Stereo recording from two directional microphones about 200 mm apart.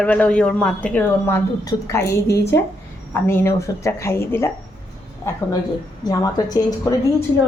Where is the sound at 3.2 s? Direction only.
10° left (ahead or behind).